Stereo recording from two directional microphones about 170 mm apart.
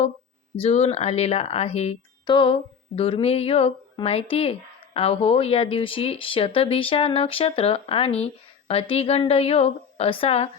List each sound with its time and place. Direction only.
0.5 s speech: 35° left (ahead or behind)
2.2 s speech: 30° left (ahead or behind)